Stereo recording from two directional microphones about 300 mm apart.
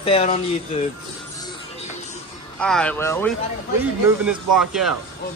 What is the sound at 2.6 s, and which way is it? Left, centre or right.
Speech, centre.